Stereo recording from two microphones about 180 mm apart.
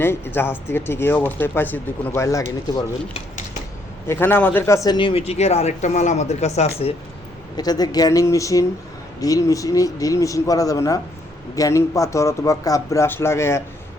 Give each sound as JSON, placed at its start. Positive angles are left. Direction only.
{"t": 0.0, "sound": "speech", "side_deg": 10}
{"t": 4.0, "sound": "speech", "side_deg": 15}
{"t": 7.5, "sound": "speech", "side_deg": 20}